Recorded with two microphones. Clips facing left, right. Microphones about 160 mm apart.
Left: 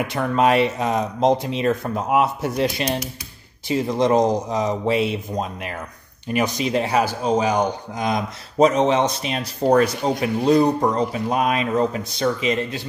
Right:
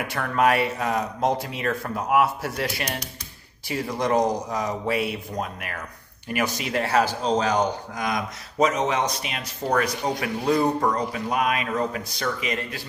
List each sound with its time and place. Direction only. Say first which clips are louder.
0.0 s speech: left 3 dB; 20° left (ahead or behind)
7.9 s speech: left 4 dB; 25° left (ahead or behind)